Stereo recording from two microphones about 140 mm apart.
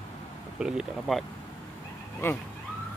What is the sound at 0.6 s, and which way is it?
Speech, centre (ahead or behind).